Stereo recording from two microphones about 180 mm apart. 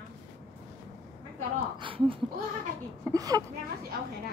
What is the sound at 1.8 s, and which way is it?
A woman's voice, 30° right (ahead or behind).